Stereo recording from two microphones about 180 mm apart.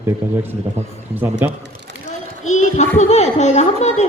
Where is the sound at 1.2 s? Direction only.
10° right (ahead or behind).